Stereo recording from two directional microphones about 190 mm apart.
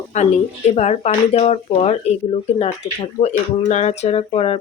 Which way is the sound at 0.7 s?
35° left (ahead or behind).